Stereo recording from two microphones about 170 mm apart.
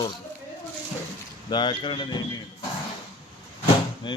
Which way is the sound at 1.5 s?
25° left (ahead or behind).